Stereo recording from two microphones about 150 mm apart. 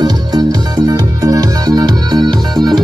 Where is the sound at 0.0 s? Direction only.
25° right (ahead or behind).